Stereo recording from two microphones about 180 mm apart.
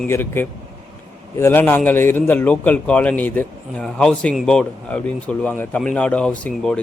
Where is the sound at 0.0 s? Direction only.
10° left (ahead or behind).